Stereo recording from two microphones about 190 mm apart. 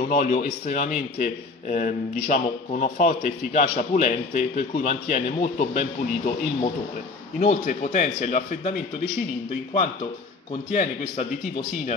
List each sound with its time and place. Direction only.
0.1 s a man's voice: 45° left (ahead or behind)
10.7 s a man's voice: 45° left (ahead or behind)